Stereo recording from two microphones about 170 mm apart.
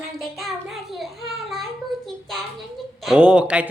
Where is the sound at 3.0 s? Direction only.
5° right (ahead or behind).